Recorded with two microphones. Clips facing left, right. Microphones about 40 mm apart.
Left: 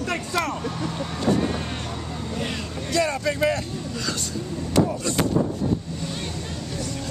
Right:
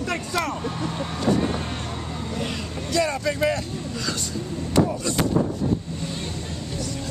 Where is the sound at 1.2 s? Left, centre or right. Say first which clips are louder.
Even; centre.